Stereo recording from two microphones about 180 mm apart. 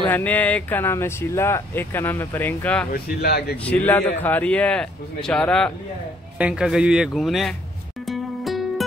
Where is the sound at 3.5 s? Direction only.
10° left (ahead or behind).